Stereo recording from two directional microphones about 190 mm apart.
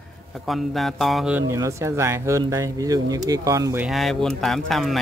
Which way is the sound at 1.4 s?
15° right (ahead or behind).